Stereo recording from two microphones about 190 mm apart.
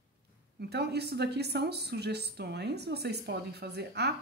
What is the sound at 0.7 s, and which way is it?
A woman's voice, 60° right (ahead or behind).